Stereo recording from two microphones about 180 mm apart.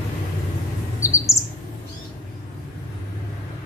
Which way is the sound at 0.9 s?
15° left (ahead or behind).